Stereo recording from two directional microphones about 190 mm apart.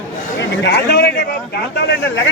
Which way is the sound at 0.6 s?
60° left (ahead or behind).